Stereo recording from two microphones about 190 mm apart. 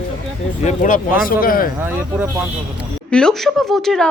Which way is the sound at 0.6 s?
40° left (ahead or behind).